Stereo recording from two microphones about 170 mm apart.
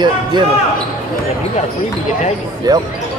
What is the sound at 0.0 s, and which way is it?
Speech, 25° right (ahead or behind).